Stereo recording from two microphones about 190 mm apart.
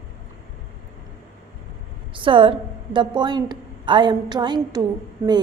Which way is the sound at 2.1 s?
25° right (ahead or behind).